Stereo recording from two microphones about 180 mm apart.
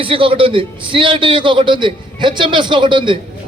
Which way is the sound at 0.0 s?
30° right (ahead or behind).